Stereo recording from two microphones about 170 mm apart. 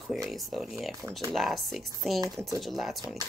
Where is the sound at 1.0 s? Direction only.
20° right (ahead or behind).